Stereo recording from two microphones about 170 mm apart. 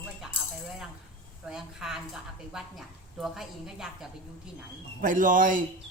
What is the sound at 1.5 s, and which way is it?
Speech, centre (ahead or behind).